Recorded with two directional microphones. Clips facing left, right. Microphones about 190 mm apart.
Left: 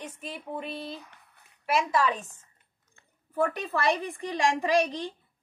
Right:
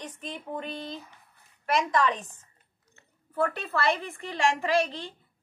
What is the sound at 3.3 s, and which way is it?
A woman's voice, 15° left (ahead or behind).